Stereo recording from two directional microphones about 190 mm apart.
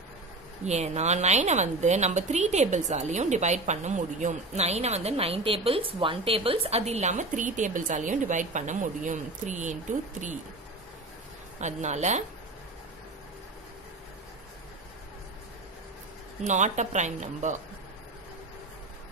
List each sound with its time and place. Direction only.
0.7 s a woman's voice: 35° right (ahead or behind)
11.6 s a woman's voice: 40° right (ahead or behind)
16.4 s a woman's voice: 40° right (ahead or behind)